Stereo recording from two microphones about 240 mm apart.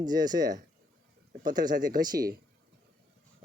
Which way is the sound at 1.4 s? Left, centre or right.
Right.